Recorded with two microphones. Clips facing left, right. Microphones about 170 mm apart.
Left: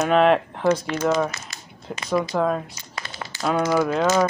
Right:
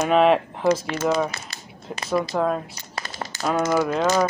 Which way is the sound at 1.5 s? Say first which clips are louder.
Right 1 dB; 30° right (ahead or behind).